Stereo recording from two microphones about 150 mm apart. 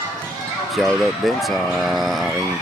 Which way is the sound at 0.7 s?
Centre (ahead or behind).